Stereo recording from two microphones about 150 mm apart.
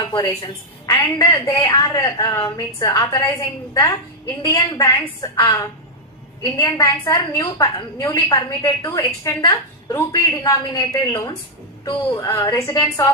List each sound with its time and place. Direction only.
0.1 s a woman's voice: 30° left (ahead or behind)
0.9 s a woman's voice: 20° left (ahead or behind)
4.4 s a woman's voice: 30° left (ahead or behind)
6.6 s a woman's voice: 20° left (ahead or behind)